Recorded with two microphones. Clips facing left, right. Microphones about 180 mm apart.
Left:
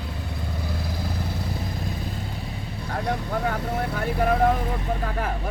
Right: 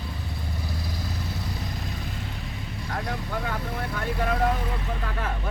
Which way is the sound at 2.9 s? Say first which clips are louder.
Left 5 dB; 35° left (ahead or behind).